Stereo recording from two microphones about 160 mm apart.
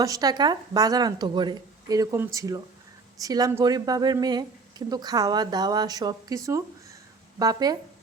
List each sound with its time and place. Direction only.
0.0 s a woman's voice: 20° right (ahead or behind)